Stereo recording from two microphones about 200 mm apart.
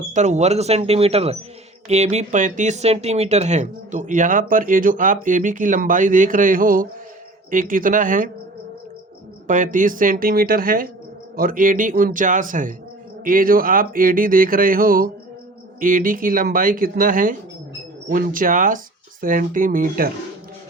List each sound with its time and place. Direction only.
0.1 s speech: 35° right (ahead or behind)
9.5 s speech: 40° right (ahead or behind)